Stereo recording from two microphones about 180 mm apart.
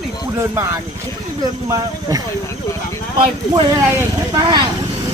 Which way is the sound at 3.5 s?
15° right (ahead or behind).